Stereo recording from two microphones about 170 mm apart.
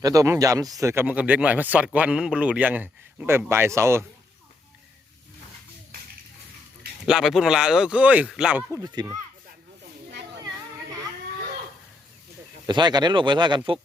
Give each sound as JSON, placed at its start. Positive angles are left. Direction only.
{"t": 0.0, "sound": "speech", "side_deg": -20}
{"t": 7.1, "sound": "speech", "side_deg": 0}
{"t": 8.8, "sound": "speech", "side_deg": -25}
{"t": 12.6, "sound": "speech", "side_deg": -25}